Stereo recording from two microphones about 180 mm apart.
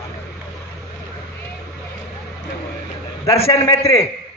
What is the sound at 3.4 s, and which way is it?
Speech, 15° left (ahead or behind).